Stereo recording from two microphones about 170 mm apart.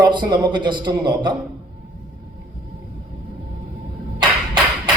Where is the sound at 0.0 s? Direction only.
25° right (ahead or behind).